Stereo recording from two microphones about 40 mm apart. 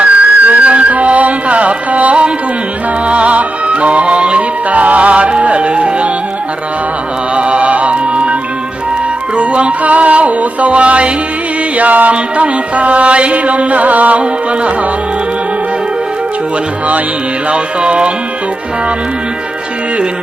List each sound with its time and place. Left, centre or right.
0.0 s music: right
7.3 s music: right
17.5 s music: right